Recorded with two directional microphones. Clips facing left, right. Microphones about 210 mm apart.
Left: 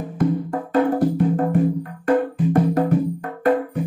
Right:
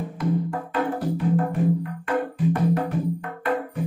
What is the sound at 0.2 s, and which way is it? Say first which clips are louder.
Music: left 6 dB; 50° left (ahead or behind).